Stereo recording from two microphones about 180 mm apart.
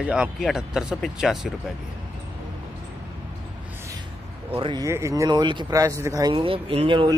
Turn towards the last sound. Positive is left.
turn(degrees=-30)  # may be behind; listen again after turning